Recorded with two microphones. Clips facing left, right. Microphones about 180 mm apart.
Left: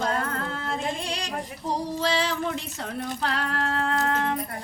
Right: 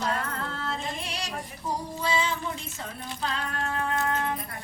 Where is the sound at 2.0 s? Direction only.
85° left.